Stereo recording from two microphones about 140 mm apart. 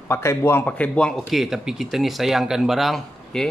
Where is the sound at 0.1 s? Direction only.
20° left (ahead or behind).